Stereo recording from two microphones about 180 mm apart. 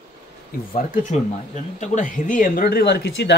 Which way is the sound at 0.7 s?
45° left (ahead or behind).